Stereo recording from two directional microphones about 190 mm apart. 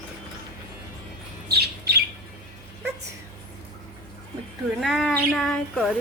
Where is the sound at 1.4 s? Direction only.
55° right (ahead or behind).